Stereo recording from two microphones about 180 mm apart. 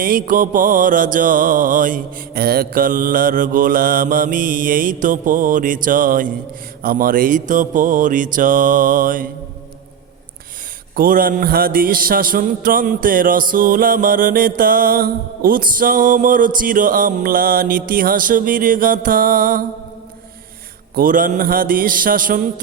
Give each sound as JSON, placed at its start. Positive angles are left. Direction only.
{"t": 0.0, "sound": "mantra", "side_deg": -50}
{"t": 10.9, "sound": "mantra", "side_deg": -50}
{"t": 20.9, "sound": "mantra", "side_deg": -50}